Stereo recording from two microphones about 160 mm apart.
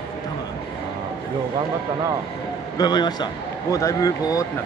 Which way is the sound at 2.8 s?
25° left (ahead or behind).